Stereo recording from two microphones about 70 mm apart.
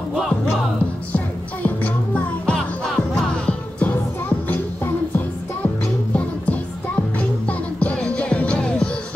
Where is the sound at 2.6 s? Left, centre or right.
Centre.